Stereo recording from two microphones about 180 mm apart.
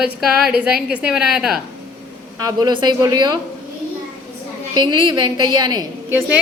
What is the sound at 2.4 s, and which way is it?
Speech, 20° right (ahead or behind).